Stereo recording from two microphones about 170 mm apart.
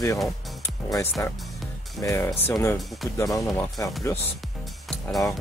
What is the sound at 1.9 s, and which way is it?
Speech, 15° left (ahead or behind).